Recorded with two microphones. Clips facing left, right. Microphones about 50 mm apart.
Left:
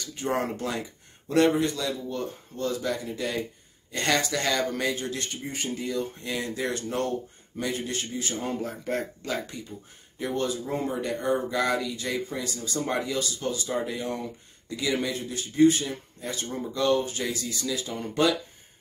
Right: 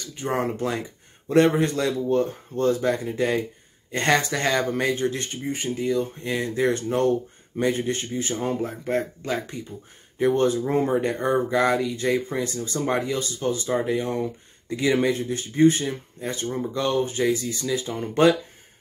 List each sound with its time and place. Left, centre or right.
0.0 s speech: centre
1.3 s speech: right
1.7 s speech: right; by 9.6 s centre
10.1 s speech: right
16.4 s speech: centre